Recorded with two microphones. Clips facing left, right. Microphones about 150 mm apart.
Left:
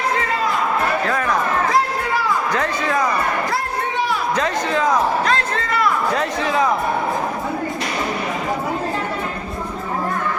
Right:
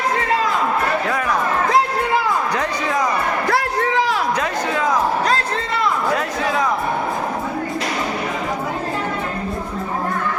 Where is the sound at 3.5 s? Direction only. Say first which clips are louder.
Right 4 dB; 80° right.